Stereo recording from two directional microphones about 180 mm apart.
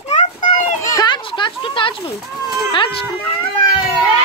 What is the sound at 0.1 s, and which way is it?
Children playing, 40° left (ahead or behind).